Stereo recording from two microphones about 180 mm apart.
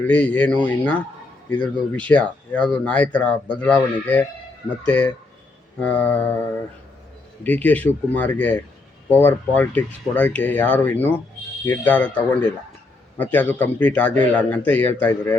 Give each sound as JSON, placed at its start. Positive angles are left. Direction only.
{"t": 0.0, "sound": "speech", "side_deg": 10}
{"t": 7.4, "sound": "speech", "side_deg": 10}